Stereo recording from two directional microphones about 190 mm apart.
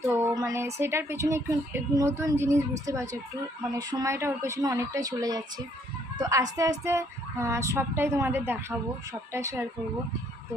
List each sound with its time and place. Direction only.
0.1 s speech: 15° right (ahead or behind)